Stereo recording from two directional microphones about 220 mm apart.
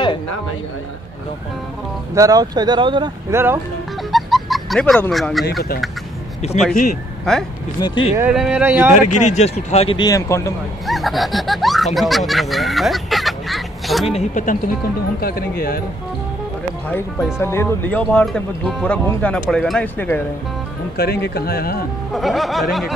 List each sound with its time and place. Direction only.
2.1 s speech: 15° right (ahead or behind)
4.1 s fowl: centre (ahead or behind)
6.4 s speech: 30° left (ahead or behind)
7.3 s speech: 5° left (ahead or behind)
7.8 s speech: 20° left (ahead or behind)
8.2 s speech: 5° right (ahead or behind)
9.2 s speech: 30° left (ahead or behind); by 10.5 s 15° left (ahead or behind)
10.9 s speech: centre (ahead or behind)
14.0 s speech: 30° left (ahead or behind)
16.9 s speech: 10° left (ahead or behind)
21.0 s speech: 45° left (ahead or behind)
22.1 s speech: centre (ahead or behind)